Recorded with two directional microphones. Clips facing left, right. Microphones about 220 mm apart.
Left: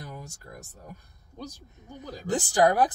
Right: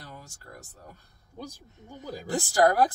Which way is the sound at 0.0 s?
15° left (ahead or behind).